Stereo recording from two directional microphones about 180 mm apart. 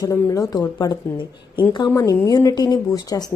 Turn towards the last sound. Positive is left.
turn(degrees=20)  # may be behind; listen again after turning